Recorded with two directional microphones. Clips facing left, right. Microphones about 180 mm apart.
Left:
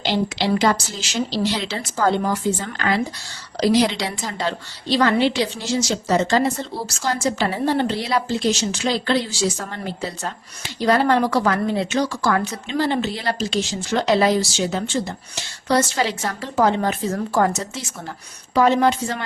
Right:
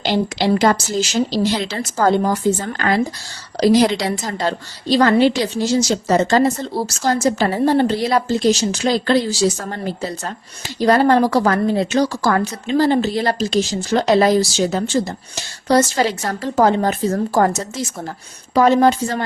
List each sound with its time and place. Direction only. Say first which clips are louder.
0.0 s a woman's voice: right 3 dB; 45° right (ahead or behind)